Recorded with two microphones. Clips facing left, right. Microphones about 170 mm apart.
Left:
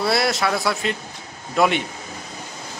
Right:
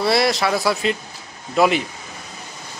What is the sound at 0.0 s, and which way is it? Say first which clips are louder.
Speech: right 2 dB; centre (ahead or behind).